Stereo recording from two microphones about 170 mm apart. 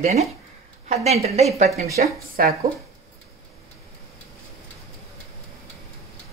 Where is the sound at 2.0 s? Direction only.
50° right (ahead or behind).